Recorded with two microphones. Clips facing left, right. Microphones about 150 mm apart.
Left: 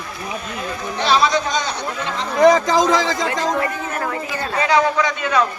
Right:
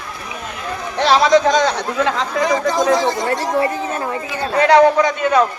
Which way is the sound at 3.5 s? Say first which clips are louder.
Right 4 dB; 30° right (ahead or behind).